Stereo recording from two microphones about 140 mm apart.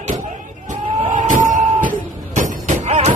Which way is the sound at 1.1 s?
65° right (ahead or behind).